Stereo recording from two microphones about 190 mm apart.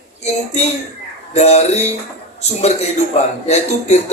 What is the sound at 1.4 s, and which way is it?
A man's voice, 35° left (ahead or behind).